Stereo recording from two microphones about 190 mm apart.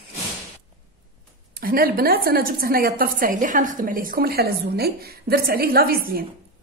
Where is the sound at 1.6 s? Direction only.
50° right (ahead or behind).